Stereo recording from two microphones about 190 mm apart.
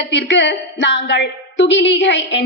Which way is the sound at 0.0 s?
70° left (ahead or behind).